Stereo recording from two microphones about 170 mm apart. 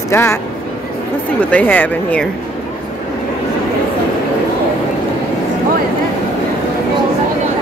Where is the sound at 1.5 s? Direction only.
10° left (ahead or behind).